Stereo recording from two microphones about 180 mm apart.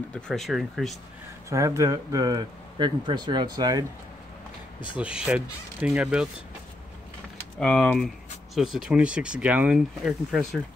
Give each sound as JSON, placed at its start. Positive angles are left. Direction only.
{"t": 0.3, "sound": "speech", "side_deg": 0}
{"t": 1.5, "sound": "speech", "side_deg": -15}
{"t": 4.9, "sound": "speech", "side_deg": -5}
{"t": 7.5, "sound": "speech", "side_deg": 5}